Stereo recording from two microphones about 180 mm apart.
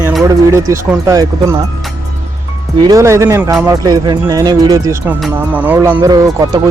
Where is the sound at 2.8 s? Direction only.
20° right (ahead or behind).